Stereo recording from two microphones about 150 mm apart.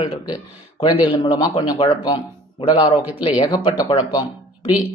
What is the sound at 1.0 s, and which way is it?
Speech, 30° left (ahead or behind).